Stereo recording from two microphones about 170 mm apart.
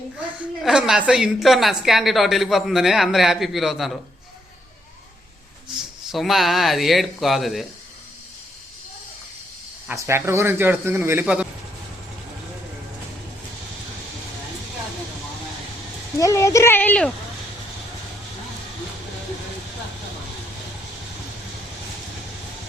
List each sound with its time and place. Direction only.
0.6 s a woman's voice: 5° right (ahead or behind)
6.1 s a woman's voice: centre (ahead or behind)
9.9 s a man's voice: 15° right (ahead or behind)
16.1 s speech: 20° left (ahead or behind)